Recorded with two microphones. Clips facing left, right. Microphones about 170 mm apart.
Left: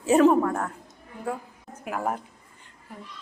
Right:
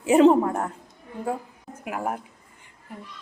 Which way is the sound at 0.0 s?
15° right (ahead or behind).